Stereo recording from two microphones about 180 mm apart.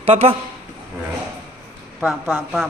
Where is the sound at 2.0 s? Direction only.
5° right (ahead or behind).